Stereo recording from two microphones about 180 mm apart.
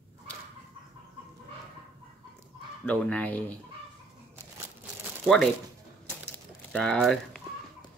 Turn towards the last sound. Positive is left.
turn(degrees=0)  # may be behind; listen again after turning